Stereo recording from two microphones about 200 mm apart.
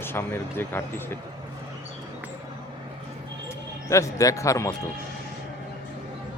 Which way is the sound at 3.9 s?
15° left (ahead or behind).